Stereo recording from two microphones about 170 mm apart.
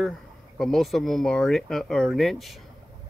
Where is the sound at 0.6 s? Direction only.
Centre (ahead or behind).